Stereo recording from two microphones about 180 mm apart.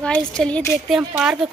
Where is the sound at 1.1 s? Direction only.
5° right (ahead or behind).